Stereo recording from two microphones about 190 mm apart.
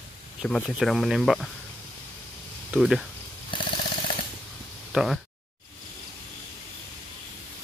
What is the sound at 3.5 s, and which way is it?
Ratchet, 25° left (ahead or behind).